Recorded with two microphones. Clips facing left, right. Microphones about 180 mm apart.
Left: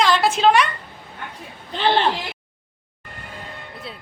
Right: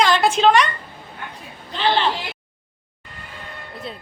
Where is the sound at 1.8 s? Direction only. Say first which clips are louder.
Left 1 dB; 55° left (ahead or behind).